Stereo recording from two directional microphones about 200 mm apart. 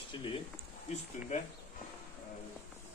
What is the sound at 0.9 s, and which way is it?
Speech, 35° left (ahead or behind).